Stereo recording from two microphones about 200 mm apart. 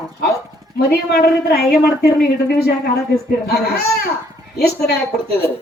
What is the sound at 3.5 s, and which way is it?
Speech, 55° left (ahead or behind).